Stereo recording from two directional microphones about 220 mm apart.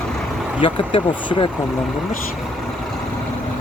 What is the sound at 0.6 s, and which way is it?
Speech, 25° left (ahead or behind).